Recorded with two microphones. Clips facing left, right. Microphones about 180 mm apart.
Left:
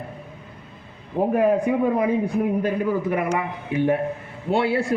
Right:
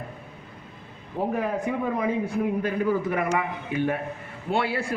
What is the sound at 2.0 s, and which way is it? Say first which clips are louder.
A man's voice: left 4 dB; 15° left (ahead or behind).